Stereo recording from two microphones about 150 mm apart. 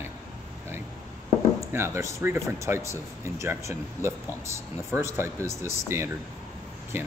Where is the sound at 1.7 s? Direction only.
20° right (ahead or behind).